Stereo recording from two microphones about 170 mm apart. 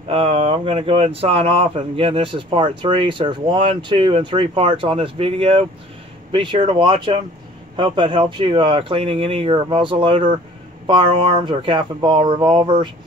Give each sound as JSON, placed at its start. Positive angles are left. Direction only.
{"t": 0.1, "sound": "speech", "side_deg": -35}